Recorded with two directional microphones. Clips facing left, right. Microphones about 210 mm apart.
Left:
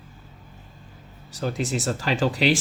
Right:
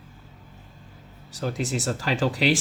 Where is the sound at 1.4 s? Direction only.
25° left (ahead or behind).